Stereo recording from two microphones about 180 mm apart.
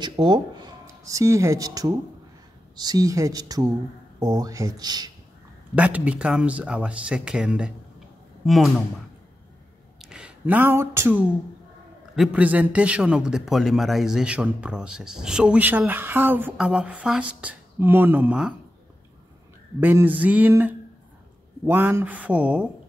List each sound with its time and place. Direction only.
0.0 s speech: 25° right (ahead or behind)
5.8 s a man's voice: 10° right (ahead or behind)
10.0 s a man's voice: 5° right (ahead or behind)
19.8 s speech: 10° right (ahead or behind)